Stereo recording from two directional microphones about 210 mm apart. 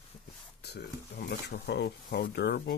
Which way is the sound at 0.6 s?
50° left (ahead or behind).